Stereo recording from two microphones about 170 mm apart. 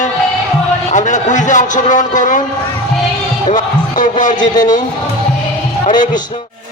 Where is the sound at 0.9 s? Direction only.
45° left (ahead or behind).